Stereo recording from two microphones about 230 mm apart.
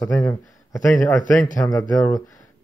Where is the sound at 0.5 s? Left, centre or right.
Centre.